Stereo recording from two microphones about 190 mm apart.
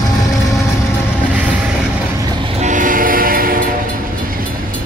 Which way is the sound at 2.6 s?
45° right (ahead or behind).